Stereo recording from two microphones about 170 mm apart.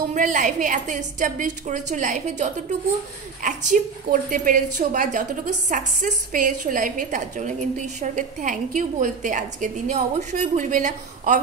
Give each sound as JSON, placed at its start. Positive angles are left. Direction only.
{"t": 0.1, "sound": "speech", "side_deg": -50}